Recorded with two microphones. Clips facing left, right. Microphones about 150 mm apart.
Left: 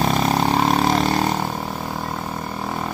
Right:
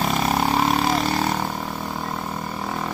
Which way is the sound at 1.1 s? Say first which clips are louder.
Left 2 dB; 15° left (ahead or behind).